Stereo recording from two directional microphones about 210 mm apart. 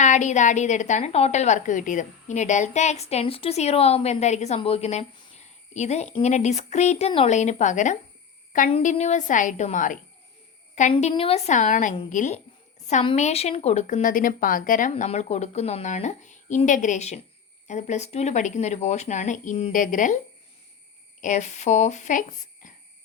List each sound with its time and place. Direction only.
0.0 s a woman's voice: 35° left (ahead or behind)
21.2 s a woman's voice: 35° left (ahead or behind)